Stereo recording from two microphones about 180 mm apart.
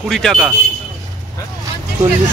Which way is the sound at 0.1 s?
Centre (ahead or behind).